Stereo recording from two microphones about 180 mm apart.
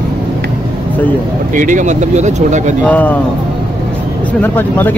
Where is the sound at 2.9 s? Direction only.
10° left (ahead or behind).